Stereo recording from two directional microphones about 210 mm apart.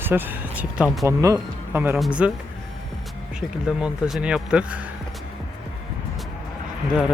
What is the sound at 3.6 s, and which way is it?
Speech, centre (ahead or behind).